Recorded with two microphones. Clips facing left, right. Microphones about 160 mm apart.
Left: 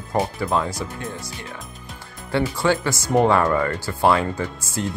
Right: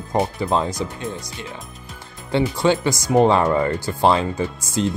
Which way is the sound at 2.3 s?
20° right (ahead or behind).